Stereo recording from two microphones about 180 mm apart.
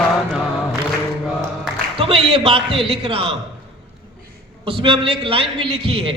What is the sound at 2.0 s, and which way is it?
Music, 30° right (ahead or behind).